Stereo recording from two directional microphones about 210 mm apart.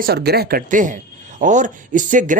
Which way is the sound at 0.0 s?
50° right (ahead or behind).